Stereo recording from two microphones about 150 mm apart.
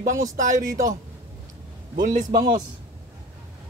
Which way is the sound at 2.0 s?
60° right (ahead or behind).